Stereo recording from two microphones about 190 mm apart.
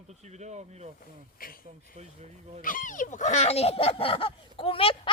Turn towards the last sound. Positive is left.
turn(degrees=30)  # may be behind; listen again after turning